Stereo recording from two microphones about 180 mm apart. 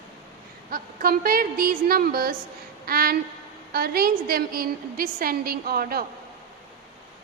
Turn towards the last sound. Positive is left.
turn(degrees=-55)  # may be behind; listen again after turning